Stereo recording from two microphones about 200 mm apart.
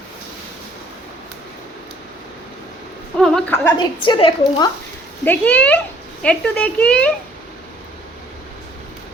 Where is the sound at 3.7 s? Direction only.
25° left (ahead or behind).